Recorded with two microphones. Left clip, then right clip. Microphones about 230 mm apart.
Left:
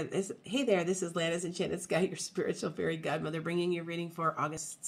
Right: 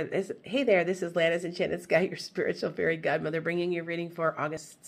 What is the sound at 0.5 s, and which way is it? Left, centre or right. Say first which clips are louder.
Speech: right 5 dB; left.